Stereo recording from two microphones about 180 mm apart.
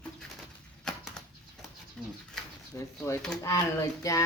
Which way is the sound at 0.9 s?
5° left (ahead or behind).